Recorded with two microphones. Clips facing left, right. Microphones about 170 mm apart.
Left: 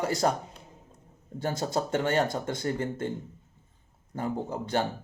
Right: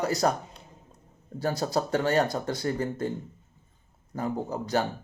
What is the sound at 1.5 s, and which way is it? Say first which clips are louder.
Speech: right 1 dB; 25° left (ahead or behind).